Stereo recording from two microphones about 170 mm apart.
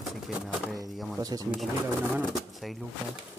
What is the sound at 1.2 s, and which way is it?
Speech, 20° right (ahead or behind).